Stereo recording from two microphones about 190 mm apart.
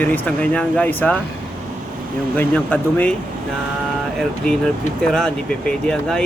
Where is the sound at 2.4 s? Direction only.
10° left (ahead or behind).